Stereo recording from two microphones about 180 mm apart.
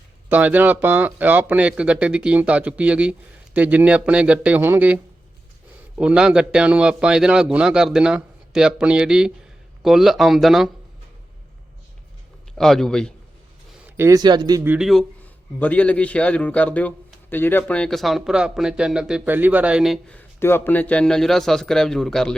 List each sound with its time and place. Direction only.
0.3 s speech: 10° right (ahead or behind)
6.0 s a man's voice: 5° right (ahead or behind)
12.5 s a man's voice: centre (ahead or behind)
13.9 s speech: 15° right (ahead or behind)
14.7 s a man's voice: centre (ahead or behind)